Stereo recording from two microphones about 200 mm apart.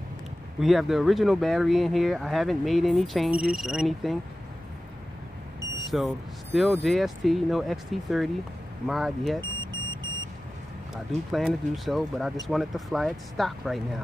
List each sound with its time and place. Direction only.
0.6 s speech: centre (ahead or behind)
5.9 s speech: centre (ahead or behind)
9.4 s vehicle: 25° right (ahead or behind)
11.3 s speech: centre (ahead or behind)